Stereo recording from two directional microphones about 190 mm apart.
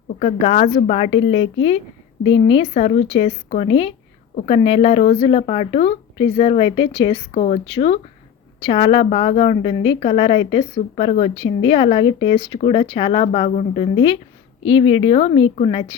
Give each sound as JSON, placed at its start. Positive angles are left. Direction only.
{"t": 0.2, "sound": "speech", "side_deg": 35}